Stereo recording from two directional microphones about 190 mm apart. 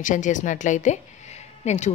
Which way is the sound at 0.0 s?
40° left (ahead or behind).